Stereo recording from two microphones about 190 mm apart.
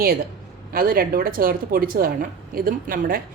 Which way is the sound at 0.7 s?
50° right (ahead or behind).